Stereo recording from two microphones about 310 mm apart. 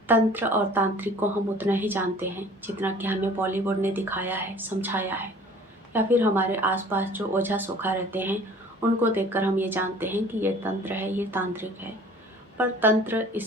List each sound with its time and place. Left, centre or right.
0.1 s a woman's voice: centre